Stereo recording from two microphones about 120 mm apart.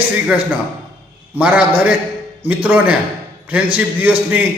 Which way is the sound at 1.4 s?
10° right (ahead or behind).